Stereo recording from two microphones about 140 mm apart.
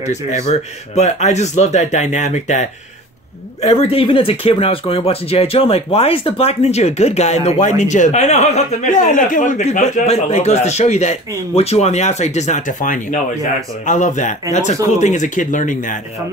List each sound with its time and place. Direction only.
0.0 s speech: 55° left (ahead or behind)
3.6 s speech: 45° left (ahead or behind); by 16.0 s 65° left (ahead or behind)